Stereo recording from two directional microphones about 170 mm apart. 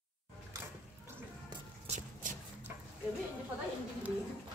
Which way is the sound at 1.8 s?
45° right (ahead or behind).